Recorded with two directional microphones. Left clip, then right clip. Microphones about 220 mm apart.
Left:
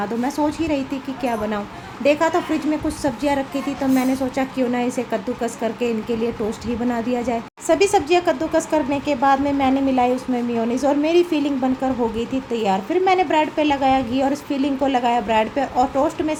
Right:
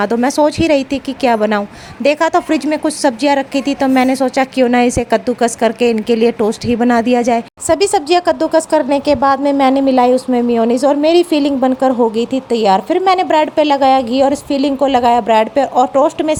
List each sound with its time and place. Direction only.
0.0 s a woman's voice: 45° right (ahead or behind)